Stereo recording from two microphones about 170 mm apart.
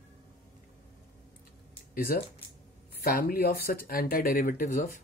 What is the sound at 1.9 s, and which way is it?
Speech, 60° left (ahead or behind).